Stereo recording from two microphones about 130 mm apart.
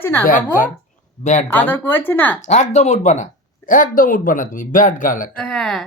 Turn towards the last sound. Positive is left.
turn(degrees=5)  # may be behind; listen again after turning